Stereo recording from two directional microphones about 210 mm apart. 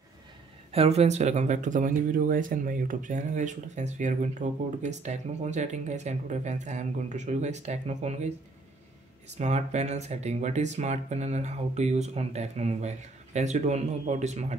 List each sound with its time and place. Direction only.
0.7 s speech: 30° right (ahead or behind)
9.3 s speech: 35° right (ahead or behind)